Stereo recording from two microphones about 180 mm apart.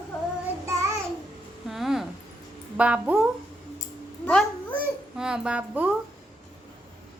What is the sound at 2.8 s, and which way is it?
Speech, 5° right (ahead or behind).